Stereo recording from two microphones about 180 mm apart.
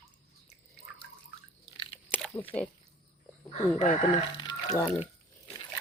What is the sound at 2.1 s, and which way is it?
Biting, 10° left (ahead or behind).